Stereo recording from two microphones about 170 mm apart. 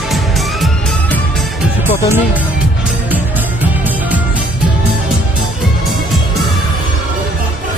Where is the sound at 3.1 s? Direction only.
10° right (ahead or behind).